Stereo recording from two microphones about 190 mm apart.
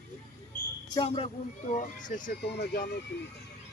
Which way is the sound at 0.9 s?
25° left (ahead or behind).